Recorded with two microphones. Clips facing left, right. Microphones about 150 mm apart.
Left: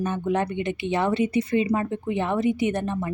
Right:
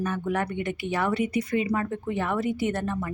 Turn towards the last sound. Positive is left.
turn(degrees=20)  # may be behind; listen again after turning